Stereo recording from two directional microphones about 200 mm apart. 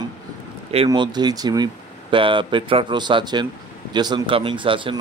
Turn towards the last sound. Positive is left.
turn(degrees=-25)  # may be behind; listen again after turning